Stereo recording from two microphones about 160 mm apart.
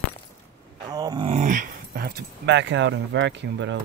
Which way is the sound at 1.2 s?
50° right (ahead or behind).